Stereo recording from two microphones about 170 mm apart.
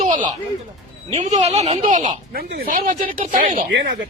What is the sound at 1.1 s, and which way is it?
Speech, 40° right (ahead or behind).